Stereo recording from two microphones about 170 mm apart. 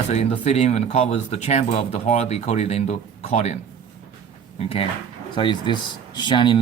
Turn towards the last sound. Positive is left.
turn(degrees=25)  # may be behind; listen again after turning